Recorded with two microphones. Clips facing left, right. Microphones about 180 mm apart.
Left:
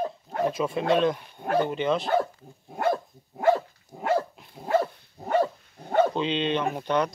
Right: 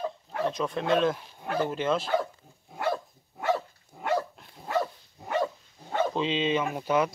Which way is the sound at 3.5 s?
50° left (ahead or behind).